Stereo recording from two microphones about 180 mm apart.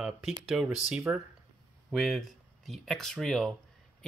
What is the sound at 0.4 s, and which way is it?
Speech, 5° right (ahead or behind).